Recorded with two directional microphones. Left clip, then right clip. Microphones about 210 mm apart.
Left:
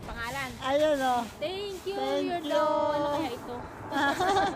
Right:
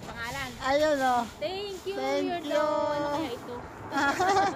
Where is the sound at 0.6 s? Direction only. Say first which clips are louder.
Right 1 dB; 20° right (ahead or behind).